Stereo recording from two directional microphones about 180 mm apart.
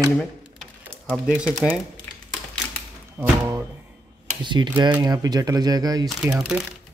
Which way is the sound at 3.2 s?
5° right (ahead or behind).